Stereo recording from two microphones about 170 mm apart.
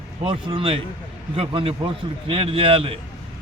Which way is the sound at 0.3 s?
30° right (ahead or behind).